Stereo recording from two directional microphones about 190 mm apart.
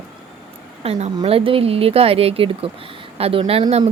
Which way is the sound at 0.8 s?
35° right (ahead or behind).